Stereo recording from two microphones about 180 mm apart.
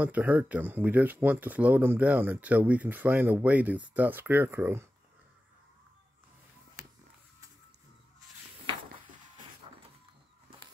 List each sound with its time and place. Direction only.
0.0 s speech: 10° right (ahead or behind)